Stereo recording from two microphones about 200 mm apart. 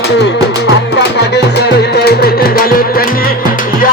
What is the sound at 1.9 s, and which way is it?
Music, 50° left (ahead or behind).